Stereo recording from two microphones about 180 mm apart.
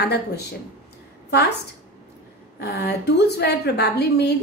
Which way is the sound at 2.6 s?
65° left (ahead or behind).